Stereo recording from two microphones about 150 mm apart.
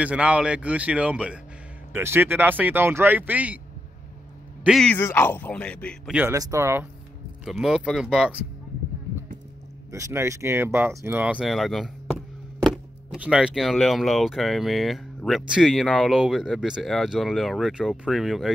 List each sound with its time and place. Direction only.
0.0 s speech: 10° right (ahead or behind)
4.6 s speech: 5° left (ahead or behind)
6.3 s speech: 20° right (ahead or behind)
7.4 s speech: centre (ahead or behind)
9.8 s speech: 20° right (ahead or behind); by 11.9 s centre (ahead or behind)
13.2 s speech: 5° right (ahead or behind)